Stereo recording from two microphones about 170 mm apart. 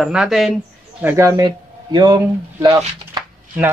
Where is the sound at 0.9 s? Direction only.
15° right (ahead or behind).